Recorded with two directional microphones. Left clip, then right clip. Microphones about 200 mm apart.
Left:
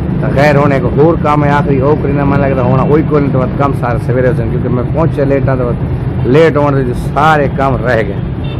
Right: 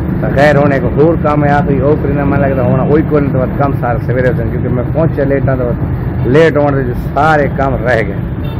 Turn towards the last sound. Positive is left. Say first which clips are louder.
# left 1 dB
turn(degrees=15)  # may be behind; listen again after turning